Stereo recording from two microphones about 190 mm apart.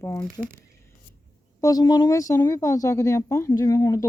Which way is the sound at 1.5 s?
20° left (ahead or behind).